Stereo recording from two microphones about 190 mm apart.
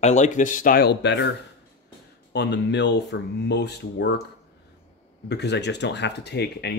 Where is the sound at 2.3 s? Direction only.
65° left (ahead or behind).